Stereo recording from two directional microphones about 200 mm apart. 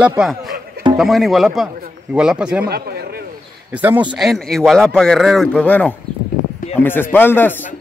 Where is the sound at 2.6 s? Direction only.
50° right (ahead or behind).